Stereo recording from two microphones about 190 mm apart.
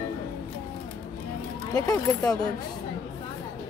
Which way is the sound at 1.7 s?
20° left (ahead or behind).